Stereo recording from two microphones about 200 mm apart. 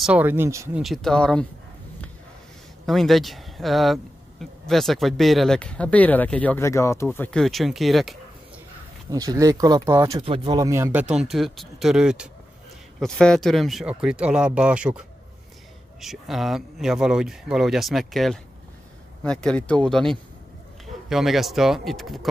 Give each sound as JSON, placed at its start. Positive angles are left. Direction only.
{"t": 0.0, "sound": "speech", "side_deg": -10}
{"t": 0.8, "sound": "speech", "side_deg": 0}
{"t": 2.9, "sound": "speech", "side_deg": 0}
{"t": 9.1, "sound": "speech", "side_deg": -20}